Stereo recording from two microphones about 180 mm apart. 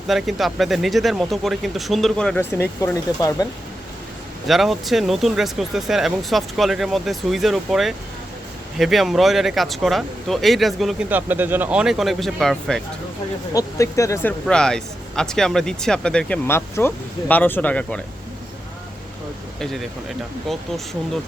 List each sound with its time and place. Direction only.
0.1 s speech: centre (ahead or behind); by 3.3 s 15° left (ahead or behind)
4.4 s speech: centre (ahead or behind)
11.1 s speech: 10° right (ahead or behind)
13.5 s speech: 20° left (ahead or behind)
14.4 s speech: 5° left (ahead or behind)
19.5 s speech: centre (ahead or behind)